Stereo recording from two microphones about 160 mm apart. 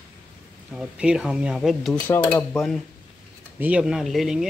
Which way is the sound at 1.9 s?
20° left (ahead or behind).